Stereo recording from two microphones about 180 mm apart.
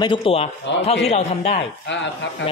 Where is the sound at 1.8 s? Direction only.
80° left.